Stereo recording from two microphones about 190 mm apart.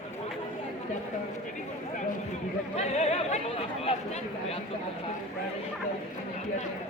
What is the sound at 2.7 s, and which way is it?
Speech, 35° left (ahead or behind).